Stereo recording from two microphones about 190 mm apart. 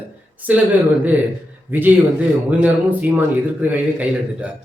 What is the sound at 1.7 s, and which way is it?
A man's voice, 10° right (ahead or behind).